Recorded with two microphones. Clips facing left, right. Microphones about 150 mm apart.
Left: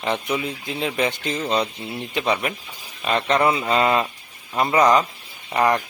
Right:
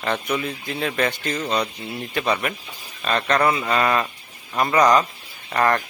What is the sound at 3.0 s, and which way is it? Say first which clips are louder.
Speech: left 1 dB; 20° left (ahead or behind).